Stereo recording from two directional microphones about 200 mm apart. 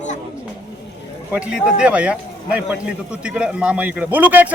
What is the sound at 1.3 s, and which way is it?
A man's voice, 5° right (ahead or behind).